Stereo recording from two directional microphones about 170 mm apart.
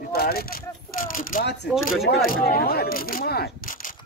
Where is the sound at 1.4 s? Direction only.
80° left.